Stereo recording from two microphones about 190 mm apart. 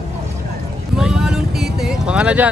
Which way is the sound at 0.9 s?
5° right (ahead or behind).